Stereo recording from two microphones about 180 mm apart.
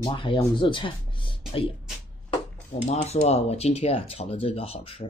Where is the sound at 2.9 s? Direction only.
35° left (ahead or behind).